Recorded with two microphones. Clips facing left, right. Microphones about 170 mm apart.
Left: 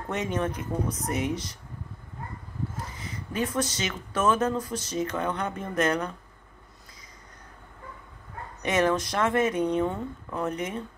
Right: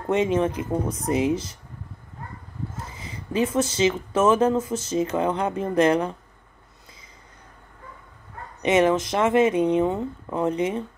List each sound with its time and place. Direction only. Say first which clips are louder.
0.1 s speech: right 8 dB; 25° right (ahead or behind)
2.9 s a sound: right 5 dB; 30° right (ahead or behind)
3.5 s speech: right 8 dB; 25° right (ahead or behind)
8.6 s speech: right 5 dB; 25° right (ahead or behind)